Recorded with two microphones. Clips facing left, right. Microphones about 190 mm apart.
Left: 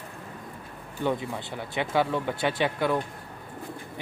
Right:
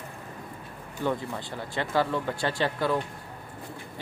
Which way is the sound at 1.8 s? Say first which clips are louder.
Left 1 dB; 15° left (ahead or behind).